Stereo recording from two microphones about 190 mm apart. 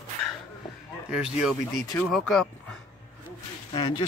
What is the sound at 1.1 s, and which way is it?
Speech, 5° right (ahead or behind).